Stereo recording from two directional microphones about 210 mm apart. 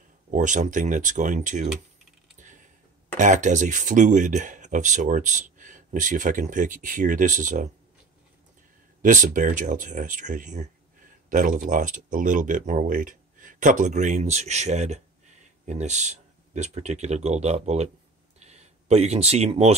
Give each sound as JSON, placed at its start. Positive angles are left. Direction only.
{"t": 0.3, "sound": "speech", "side_deg": -35}
{"t": 2.3, "sound": "typing", "side_deg": -35}
{"t": 3.2, "sound": "speech", "side_deg": -35}
{"t": 9.0, "sound": "speech", "side_deg": -40}
{"t": 18.4, "sound": "a sound", "side_deg": -30}